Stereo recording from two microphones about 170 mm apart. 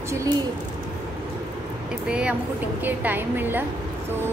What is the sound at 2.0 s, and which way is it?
A woman's voice, 5° right (ahead or behind).